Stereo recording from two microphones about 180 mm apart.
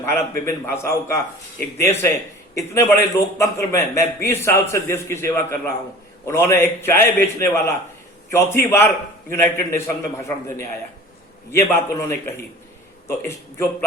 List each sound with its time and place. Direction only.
0.0 s a man's voice: 15° left (ahead or behind)
11.7 s a man's voice: 15° left (ahead or behind)